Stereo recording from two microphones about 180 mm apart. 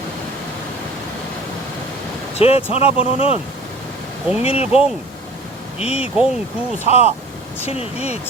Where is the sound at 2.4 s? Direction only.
35° left (ahead or behind).